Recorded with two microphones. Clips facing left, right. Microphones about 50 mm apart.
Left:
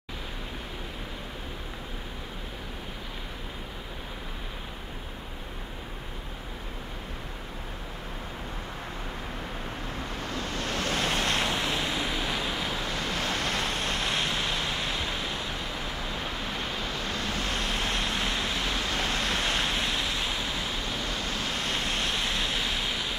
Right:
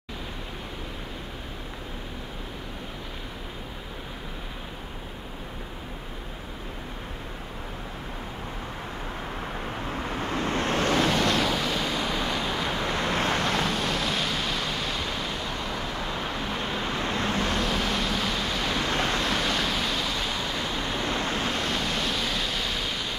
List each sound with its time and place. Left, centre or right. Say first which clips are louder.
10.2 s vehicle: right 7 dB; right
11.1 s waves: right 4 dB; left
11.5 s waves: right 2 dB; left
13.1 s waves: right 4 dB; right
13.7 s waves: right 2 dB; left; by 15.3 s centre
17.1 s vehicle: right 5 dB; right
17.6 s a sound: right 3 dB; left
18.8 s waves: right 3 dB; right
19.4 s a sound: right 2 dB; left; by 20.4 s centre
21.1 s waves: right 4 dB; right
21.7 s pink noise: right 2 dB; left; by 23.1 s centre